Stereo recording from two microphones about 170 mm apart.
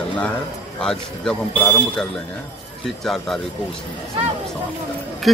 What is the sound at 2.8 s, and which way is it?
Speech, centre (ahead or behind).